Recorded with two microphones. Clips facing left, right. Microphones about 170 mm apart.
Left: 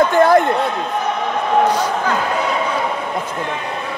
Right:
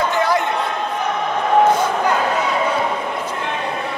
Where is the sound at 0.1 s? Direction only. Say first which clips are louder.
Left 6 dB; 50° left (ahead or behind).